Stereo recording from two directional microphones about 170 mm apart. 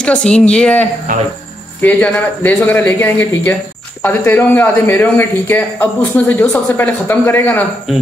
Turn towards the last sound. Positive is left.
turn(degrees=10)  # may be behind; listen again after turning